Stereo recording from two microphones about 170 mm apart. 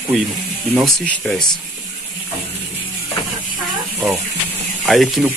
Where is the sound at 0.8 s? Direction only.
5° left (ahead or behind).